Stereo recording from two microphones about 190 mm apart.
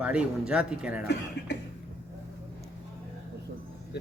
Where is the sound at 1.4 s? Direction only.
65° left (ahead or behind).